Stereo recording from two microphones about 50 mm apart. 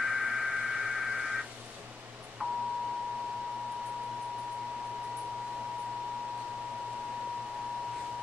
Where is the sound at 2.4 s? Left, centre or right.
Centre.